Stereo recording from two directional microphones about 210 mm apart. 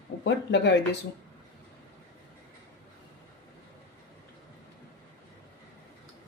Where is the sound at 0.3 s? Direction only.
55° left (ahead or behind).